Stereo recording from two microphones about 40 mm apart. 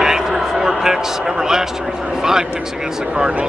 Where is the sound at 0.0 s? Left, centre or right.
Centre.